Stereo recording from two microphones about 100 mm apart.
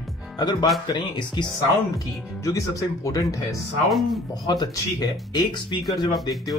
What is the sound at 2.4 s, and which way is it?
Speech, 35° left (ahead or behind).